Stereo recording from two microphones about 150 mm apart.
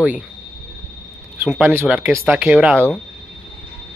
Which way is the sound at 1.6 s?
15° right (ahead or behind).